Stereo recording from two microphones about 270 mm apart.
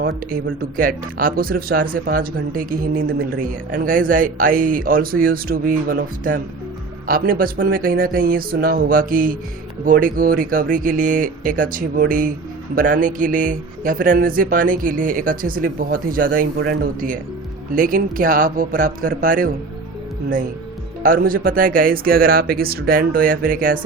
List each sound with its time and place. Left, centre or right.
0.8 s speech: right
21.0 s speech: right